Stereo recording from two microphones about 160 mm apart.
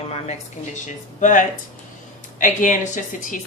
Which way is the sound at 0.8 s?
50° left (ahead or behind).